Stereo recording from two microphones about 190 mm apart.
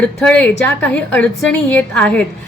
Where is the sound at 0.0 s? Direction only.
5° left (ahead or behind).